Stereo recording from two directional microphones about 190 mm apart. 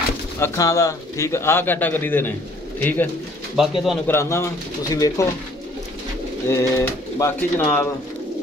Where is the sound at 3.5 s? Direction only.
Centre (ahead or behind).